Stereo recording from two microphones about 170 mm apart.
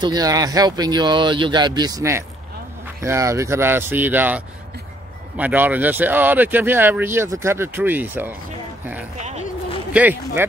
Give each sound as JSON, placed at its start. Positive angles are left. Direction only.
{"t": 0.0, "sound": "speech", "side_deg": -20}
{"t": 5.4, "sound": "speech", "side_deg": -10}
{"t": 9.9, "sound": "speech", "side_deg": -10}